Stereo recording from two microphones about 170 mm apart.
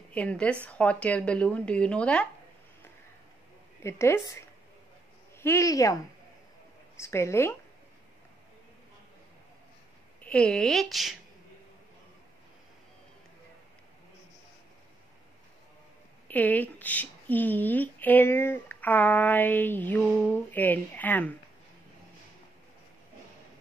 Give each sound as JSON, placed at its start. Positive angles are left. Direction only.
{"t": 0.1, "sound": "a woman's voice", "side_deg": 5}
{"t": 3.8, "sound": "a woman's voice", "side_deg": 15}
{"t": 7.0, "sound": "a woman's voice", "side_deg": 15}
{"t": 10.2, "sound": "speech", "side_deg": 5}
{"t": 16.3, "sound": "a woman's voice", "side_deg": 10}